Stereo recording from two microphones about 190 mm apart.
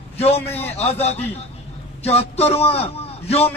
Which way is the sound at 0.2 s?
35° left (ahead or behind).